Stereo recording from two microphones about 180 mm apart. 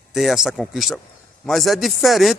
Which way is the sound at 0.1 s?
Centre (ahead or behind).